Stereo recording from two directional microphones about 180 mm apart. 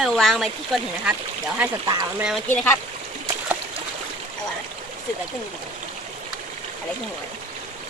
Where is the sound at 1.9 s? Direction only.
20° right (ahead or behind).